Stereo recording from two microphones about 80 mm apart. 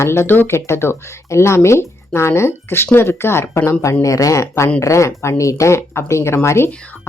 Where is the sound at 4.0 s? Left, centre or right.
Left.